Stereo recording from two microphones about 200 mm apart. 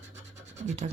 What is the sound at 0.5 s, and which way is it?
Speech, 35° right (ahead or behind).